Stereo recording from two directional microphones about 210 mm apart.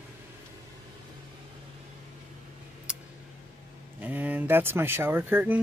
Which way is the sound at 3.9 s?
10° right (ahead or behind).